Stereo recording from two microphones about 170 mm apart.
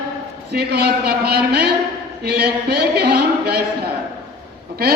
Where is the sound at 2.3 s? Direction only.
70° right (ahead or behind).